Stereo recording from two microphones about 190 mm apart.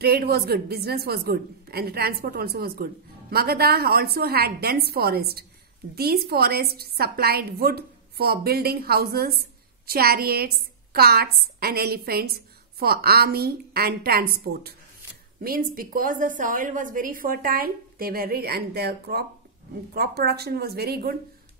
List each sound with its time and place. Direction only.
0.0 s a woman's voice: 55° right (ahead or behind)